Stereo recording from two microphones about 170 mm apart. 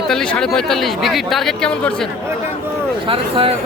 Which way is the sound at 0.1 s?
5° left (ahead or behind).